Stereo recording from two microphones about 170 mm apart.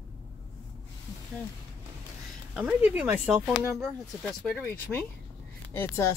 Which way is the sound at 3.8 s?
Centre (ahead or behind).